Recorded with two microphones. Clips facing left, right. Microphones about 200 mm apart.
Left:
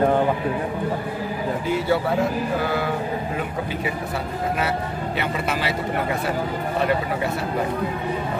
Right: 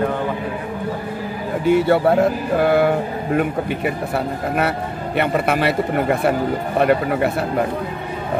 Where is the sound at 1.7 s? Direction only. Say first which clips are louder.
Right 8 dB; 60° right (ahead or behind).